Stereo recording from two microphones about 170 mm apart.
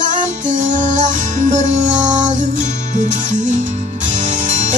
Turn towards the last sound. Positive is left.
turn(degrees=-45)  # may be behind; listen again after turning